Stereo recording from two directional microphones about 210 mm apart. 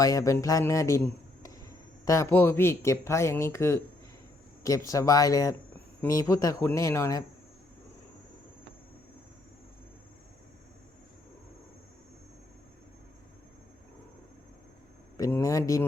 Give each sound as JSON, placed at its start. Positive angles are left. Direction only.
{"t": 0.0, "sound": "speech", "side_deg": 15}
{"t": 15.2, "sound": "speech", "side_deg": 15}